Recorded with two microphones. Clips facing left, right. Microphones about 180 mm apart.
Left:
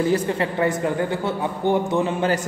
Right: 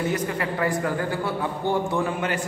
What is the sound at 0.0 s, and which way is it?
Speech, 30° left (ahead or behind).